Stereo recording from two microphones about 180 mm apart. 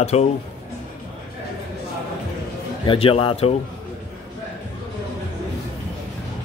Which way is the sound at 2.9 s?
30° left (ahead or behind).